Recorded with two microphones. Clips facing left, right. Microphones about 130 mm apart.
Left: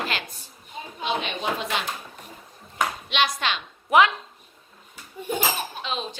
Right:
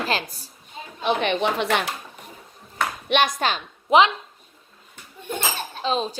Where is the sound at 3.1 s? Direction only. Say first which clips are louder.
Right 7 dB; 45° right (ahead or behind).